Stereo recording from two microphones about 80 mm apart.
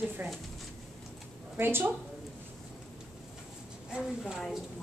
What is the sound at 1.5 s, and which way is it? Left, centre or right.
Speech, right.